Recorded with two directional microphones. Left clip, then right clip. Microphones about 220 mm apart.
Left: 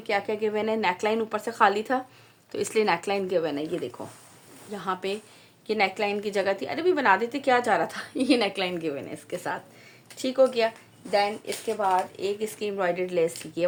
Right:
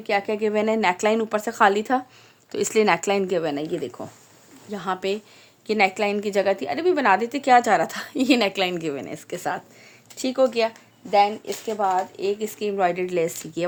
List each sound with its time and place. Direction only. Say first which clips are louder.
0.1 s a woman's voice: right 4 dB; 45° right (ahead or behind)